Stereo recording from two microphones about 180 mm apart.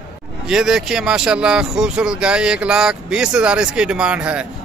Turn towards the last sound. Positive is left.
turn(degrees=-5)  # may be behind; listen again after turning